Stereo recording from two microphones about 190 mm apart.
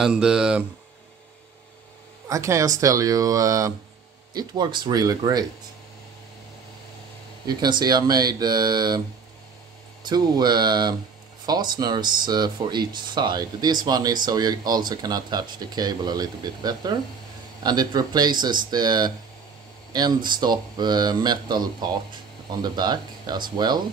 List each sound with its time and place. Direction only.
0.0 s speech: 5° right (ahead or behind)
2.2 s speech: 15° right (ahead or behind)
7.4 s speech: 20° right (ahead or behind)
10.0 s speech: 20° right (ahead or behind)